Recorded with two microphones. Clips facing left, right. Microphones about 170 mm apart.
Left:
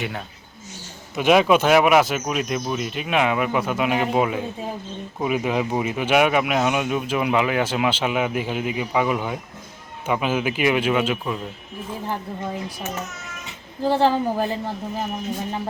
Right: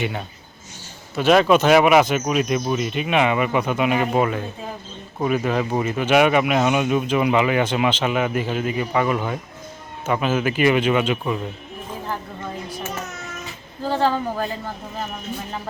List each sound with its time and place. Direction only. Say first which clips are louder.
1.1 s a woman's voice: right 1 dB; 10° left (ahead or behind)
13.8 s a woman's voice: left 2 dB; 15° left (ahead or behind)